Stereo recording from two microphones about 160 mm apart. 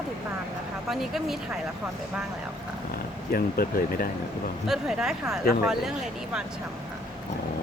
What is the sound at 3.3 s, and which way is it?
Speech, 70° left (ahead or behind).